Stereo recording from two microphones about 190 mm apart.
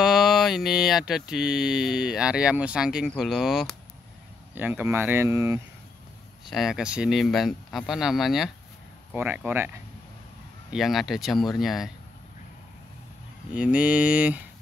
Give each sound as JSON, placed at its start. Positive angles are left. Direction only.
{"t": 0.0, "sound": "mantra", "side_deg": 0}
{"t": 4.6, "sound": "speech", "side_deg": -10}
{"t": 6.4, "sound": "mantra", "side_deg": 0}
{"t": 9.1, "sound": "speech", "side_deg": -10}
{"t": 10.7, "sound": "mantra", "side_deg": 0}
{"t": 13.6, "sound": "speech", "side_deg": -5}